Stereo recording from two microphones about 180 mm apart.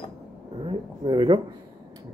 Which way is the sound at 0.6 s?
25° right (ahead or behind).